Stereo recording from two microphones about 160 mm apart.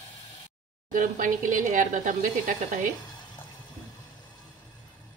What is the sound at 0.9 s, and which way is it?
A woman's voice, 55° right (ahead or behind).